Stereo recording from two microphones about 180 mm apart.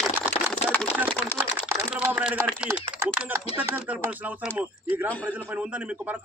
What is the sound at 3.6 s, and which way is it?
A man's voice, 10° right (ahead or behind).